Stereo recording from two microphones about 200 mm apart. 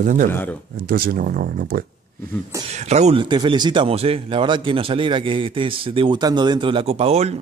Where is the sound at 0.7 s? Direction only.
50° right (ahead or behind).